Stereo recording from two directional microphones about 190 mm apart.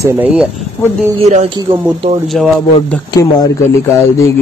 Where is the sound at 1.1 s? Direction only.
35° right (ahead or behind).